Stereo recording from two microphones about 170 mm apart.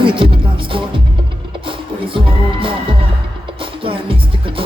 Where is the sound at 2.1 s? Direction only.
30° right (ahead or behind).